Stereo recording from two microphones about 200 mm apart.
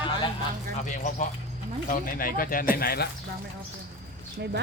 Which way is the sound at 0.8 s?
35° left (ahead or behind).